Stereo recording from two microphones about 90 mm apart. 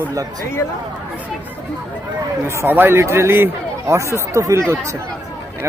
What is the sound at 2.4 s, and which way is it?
Speech, 30° right (ahead or behind).